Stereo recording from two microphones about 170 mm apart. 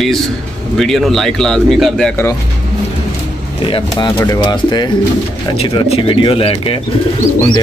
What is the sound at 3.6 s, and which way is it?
Speech, 30° left (ahead or behind).